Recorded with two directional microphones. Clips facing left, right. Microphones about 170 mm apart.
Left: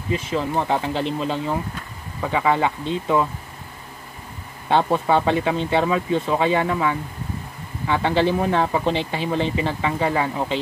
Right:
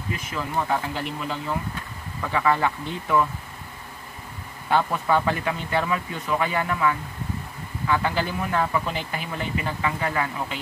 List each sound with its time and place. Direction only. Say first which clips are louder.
0.1 s speech: left 6 dB; 25° left (ahead or behind)
4.6 s speech: left 4 dB; 25° left (ahead or behind)